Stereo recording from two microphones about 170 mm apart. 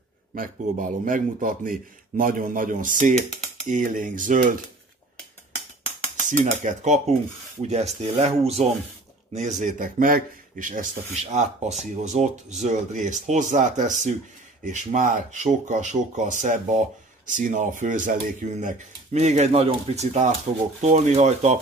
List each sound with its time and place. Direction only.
0.3 s speech: 50° right (ahead or behind)
6.2 s speech: 50° right (ahead or behind)